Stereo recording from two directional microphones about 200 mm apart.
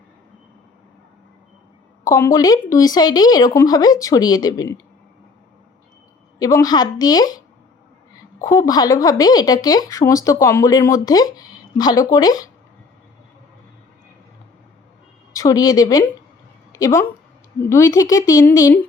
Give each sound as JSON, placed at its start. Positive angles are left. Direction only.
{"t": 2.0, "sound": "speech", "side_deg": 15}
{"t": 6.4, "sound": "speech", "side_deg": 20}
{"t": 8.4, "sound": "speech", "side_deg": 15}
{"t": 15.3, "sound": "speech", "side_deg": 15}